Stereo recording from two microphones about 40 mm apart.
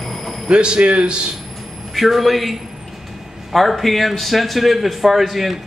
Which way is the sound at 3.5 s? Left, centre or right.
Centre.